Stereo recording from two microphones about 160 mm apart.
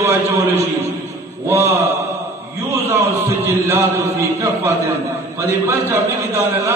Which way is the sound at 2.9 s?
15° right (ahead or behind).